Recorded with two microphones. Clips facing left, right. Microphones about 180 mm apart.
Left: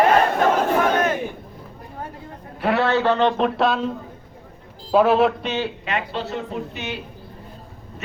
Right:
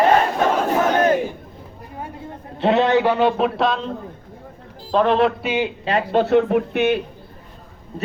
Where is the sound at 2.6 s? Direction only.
20° right (ahead or behind); by 3.8 s centre (ahead or behind).